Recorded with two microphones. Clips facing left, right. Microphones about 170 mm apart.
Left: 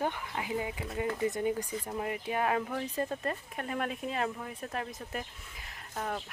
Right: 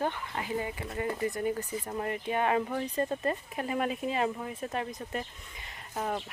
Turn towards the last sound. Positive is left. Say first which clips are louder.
# right 3 dB
turn(degrees=-5)  # may be behind; listen again after turning